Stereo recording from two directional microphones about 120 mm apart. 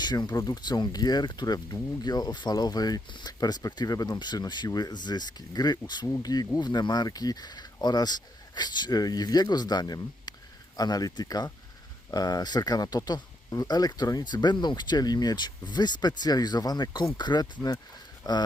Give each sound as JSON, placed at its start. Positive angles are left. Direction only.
{"t": 0.0, "sound": "speech", "side_deg": 35}